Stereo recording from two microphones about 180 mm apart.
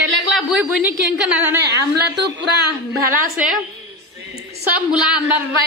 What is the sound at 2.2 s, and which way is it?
Speech, 65° right (ahead or behind).